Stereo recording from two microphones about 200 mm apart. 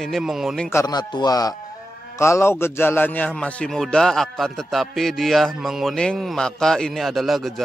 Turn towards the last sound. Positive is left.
turn(degrees=0)  # may be behind; listen again after turning